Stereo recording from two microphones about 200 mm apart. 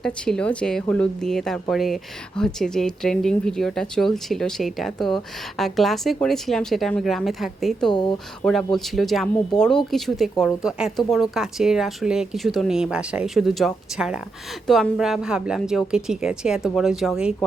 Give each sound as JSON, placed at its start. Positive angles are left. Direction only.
{"t": 0.0, "sound": "a woman's voice", "side_deg": 5}
{"t": 7.9, "sound": "speech", "side_deg": 20}
{"t": 8.4, "sound": "a woman's voice", "side_deg": 0}